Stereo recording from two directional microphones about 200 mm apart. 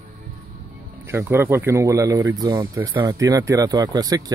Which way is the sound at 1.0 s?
15° right (ahead or behind).